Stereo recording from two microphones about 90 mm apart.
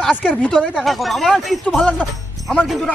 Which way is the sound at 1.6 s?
15° left (ahead or behind).